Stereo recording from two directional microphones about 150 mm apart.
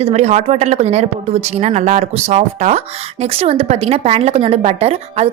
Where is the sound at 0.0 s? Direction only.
45° right (ahead or behind).